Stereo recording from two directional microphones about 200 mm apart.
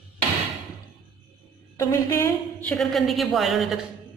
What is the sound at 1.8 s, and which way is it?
Speech, 15° left (ahead or behind).